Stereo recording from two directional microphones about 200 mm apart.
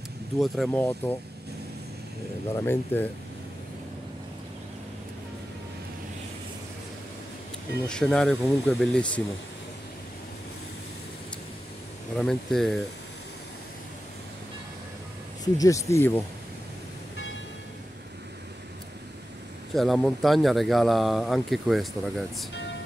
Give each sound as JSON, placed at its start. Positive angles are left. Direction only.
{"t": 0.4, "sound": "speech", "side_deg": 5}
{"t": 2.5, "sound": "speech", "side_deg": 10}
{"t": 7.8, "sound": "speech", "side_deg": 5}
{"t": 12.2, "sound": "speech", "side_deg": 0}
{"t": 15.5, "sound": "speech", "side_deg": 15}
{"t": 19.7, "sound": "speech", "side_deg": 0}